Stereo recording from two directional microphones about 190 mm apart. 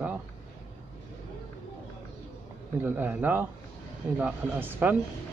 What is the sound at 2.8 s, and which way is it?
Speech, 10° right (ahead or behind).